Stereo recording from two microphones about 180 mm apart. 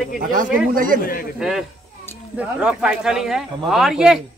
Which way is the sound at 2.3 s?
5° right (ahead or behind).